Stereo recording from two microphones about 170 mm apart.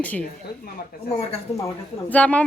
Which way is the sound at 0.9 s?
60° left (ahead or behind).